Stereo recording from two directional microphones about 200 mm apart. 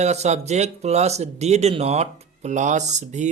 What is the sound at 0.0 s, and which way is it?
Speech, 35° right (ahead or behind).